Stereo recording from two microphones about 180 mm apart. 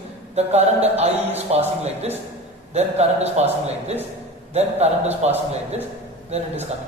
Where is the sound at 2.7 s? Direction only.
35° right (ahead or behind).